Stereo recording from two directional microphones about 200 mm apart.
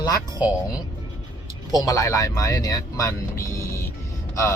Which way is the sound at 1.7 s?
20° left (ahead or behind).